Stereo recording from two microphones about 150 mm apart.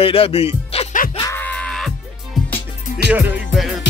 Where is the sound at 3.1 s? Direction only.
10° right (ahead or behind).